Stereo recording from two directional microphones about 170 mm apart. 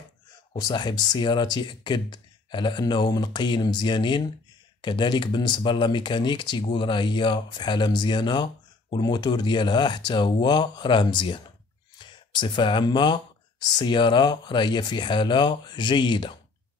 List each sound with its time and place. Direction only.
0.5 s speech: 25° left (ahead or behind)